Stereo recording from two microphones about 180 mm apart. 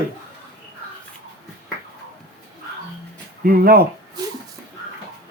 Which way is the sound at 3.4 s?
55° right (ahead or behind).